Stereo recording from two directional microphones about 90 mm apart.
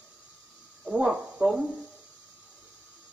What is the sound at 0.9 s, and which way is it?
Speech, 10° right (ahead or behind).